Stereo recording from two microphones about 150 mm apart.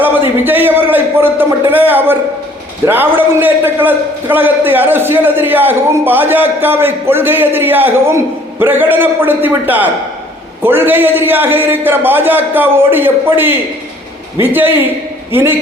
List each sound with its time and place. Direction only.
0.4 s a man's voice: 15° right (ahead or behind)